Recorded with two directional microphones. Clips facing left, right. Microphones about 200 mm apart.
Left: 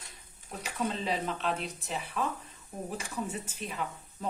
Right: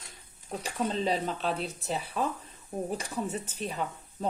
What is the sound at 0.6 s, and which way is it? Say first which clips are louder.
Speech: right 3 dB; 35° right (ahead or behind).